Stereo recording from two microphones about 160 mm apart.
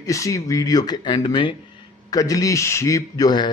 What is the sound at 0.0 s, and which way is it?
Mantra, 20° left (ahead or behind).